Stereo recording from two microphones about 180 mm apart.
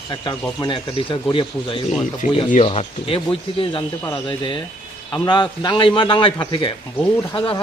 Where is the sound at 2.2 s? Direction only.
45° left (ahead or behind).